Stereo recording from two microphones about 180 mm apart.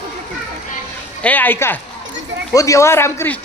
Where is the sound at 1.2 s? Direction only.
10° left (ahead or behind).